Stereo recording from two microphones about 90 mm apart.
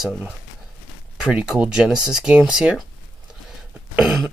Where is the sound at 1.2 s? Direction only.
10° right (ahead or behind).